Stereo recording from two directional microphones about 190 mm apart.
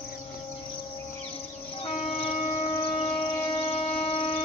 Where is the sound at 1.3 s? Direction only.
30° left (ahead or behind).